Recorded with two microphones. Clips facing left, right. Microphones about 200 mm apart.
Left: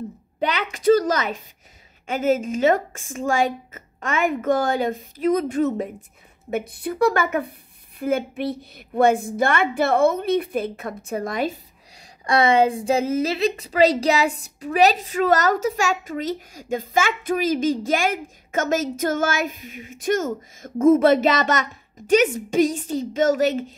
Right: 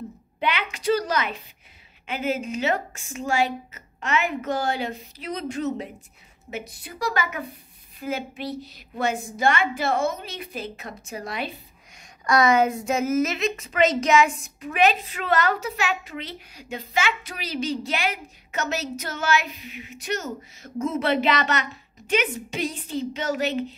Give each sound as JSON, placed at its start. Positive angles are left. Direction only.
{"t": 0.4, "sound": "a woman's voice", "side_deg": 40}